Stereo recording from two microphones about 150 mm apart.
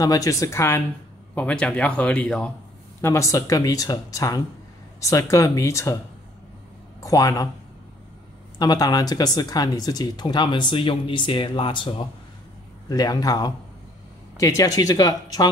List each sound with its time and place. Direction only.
0.0 s speech: 25° left (ahead or behind); by 2.5 s 5° left (ahead or behind)
3.0 s speech: 20° left (ahead or behind)
7.0 s speech: 20° left (ahead or behind)
8.5 s speech: 25° left (ahead or behind)
14.6 s speech: 25° left (ahead or behind)